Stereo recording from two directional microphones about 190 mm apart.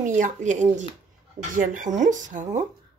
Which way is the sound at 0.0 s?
40° right (ahead or behind).